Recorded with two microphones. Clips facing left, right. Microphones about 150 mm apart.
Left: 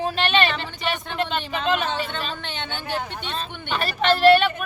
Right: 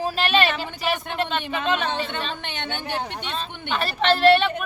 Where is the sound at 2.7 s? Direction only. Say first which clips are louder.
Left 1 dB; 15° right (ahead or behind).